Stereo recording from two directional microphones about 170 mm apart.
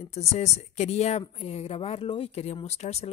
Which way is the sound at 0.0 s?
40° left (ahead or behind).